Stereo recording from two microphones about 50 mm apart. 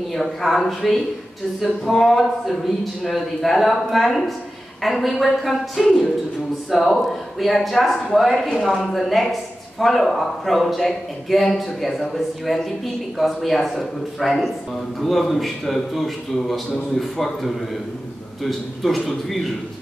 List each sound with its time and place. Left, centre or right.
0.1 s a man's voice: centre